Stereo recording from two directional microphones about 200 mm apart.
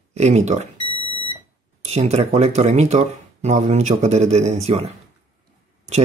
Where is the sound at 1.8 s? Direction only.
30° right (ahead or behind).